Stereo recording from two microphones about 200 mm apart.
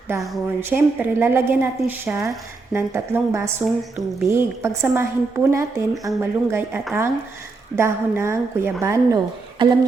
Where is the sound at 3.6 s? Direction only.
Centre (ahead or behind).